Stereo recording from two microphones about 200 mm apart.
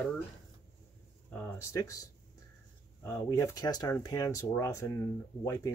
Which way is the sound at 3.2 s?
15° left (ahead or behind).